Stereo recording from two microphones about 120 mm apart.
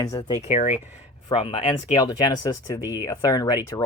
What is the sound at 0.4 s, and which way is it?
Speech, 80° left.